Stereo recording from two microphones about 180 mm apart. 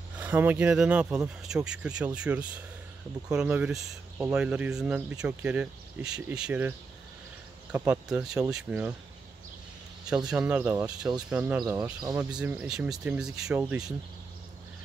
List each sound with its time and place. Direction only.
0.2 s speech: 10° right (ahead or behind)
7.7 s speech: 10° right (ahead or behind)
10.0 s speech: 5° right (ahead or behind)
11.6 s speech: 20° right (ahead or behind)
12.3 s speech: 5° right (ahead or behind)